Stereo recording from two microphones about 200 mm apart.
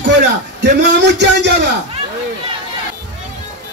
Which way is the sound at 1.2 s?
60° right (ahead or behind).